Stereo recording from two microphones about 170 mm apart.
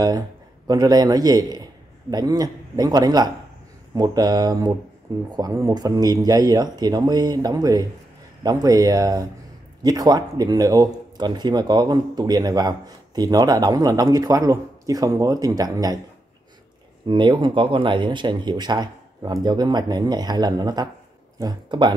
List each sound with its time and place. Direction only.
0.7 s a man's voice: 20° right (ahead or behind)
17.1 s speech: 25° right (ahead or behind)